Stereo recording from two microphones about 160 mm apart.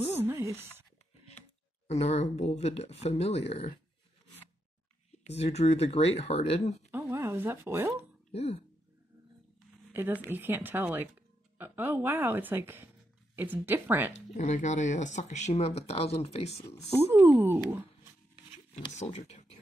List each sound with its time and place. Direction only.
0.2 s a sound: 15° right (ahead or behind)
1.9 s speech: 40° left (ahead or behind)
5.2 s speech: 40° left (ahead or behind)
6.9 s speech: 15° right (ahead or behind)
8.3 s speech: 40° left (ahead or behind)
9.9 s speech: 15° right (ahead or behind)
14.1 s speech: 50° left (ahead or behind)
17.1 s speech: 15° right (ahead or behind)
18.9 s speech: 45° left (ahead or behind)